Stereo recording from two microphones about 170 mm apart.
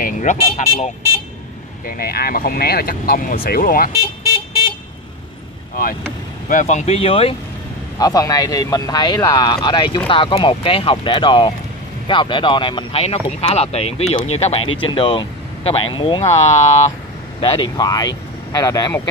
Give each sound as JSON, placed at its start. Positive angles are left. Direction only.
{"t": 0.0, "sound": "speech", "side_deg": 45}
{"t": 1.9, "sound": "speech", "side_deg": 65}
{"t": 6.5, "sound": "speech", "side_deg": 40}
{"t": 8.0, "sound": "speech", "side_deg": 20}
{"t": 16.4, "sound": "speech", "side_deg": 45}
{"t": 17.4, "sound": "speech", "side_deg": 30}